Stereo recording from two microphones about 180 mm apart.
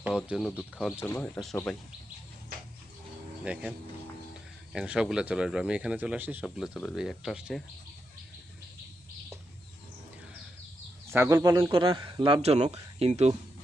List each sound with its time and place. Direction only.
0.3 s speech: 5° right (ahead or behind)
0.9 s speech: 10° left (ahead or behind)
3.4 s speech: 5° right (ahead or behind)
11.1 s speech: 15° right (ahead or behind); by 13.3 s 35° right (ahead or behind)